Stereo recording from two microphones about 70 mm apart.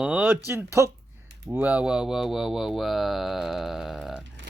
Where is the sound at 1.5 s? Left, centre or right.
Right; by 4.1 s centre.